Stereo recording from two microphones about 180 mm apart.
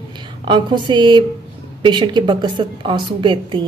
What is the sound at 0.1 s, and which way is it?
A woman's voice, 25° right (ahead or behind).